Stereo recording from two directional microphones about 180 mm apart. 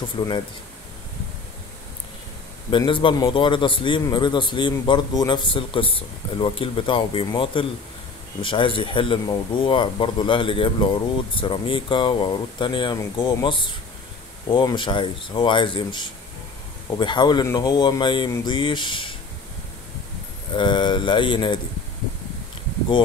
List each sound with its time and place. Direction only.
0.2 s a man's voice: 25° left (ahead or behind)
2.7 s a man's voice: 25° left (ahead or behind)
20.5 s a man's voice: 25° left (ahead or behind)